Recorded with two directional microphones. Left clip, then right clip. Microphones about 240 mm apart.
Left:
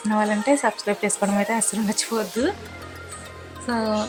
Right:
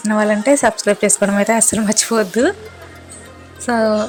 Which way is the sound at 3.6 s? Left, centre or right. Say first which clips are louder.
Right 9 dB; centre.